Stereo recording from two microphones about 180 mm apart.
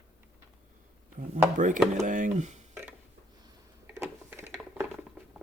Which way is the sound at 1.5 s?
45° right (ahead or behind).